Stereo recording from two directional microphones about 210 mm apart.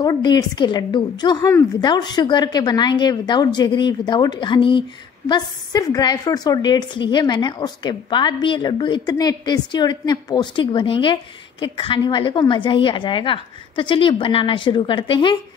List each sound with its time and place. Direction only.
0.0 s a woman's voice: 20° left (ahead or behind)